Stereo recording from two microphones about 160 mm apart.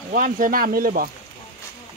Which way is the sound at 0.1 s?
60° right (ahead or behind).